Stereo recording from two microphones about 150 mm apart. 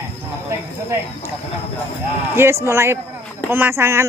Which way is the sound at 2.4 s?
15° right (ahead or behind).